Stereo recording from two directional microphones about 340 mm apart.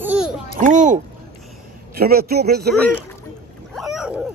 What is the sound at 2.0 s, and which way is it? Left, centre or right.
Speech, right.